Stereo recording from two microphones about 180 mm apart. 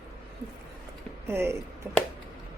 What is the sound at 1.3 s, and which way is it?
Speech, 10° right (ahead or behind).